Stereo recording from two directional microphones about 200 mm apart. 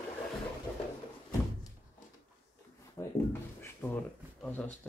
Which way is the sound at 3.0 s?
15° left (ahead or behind).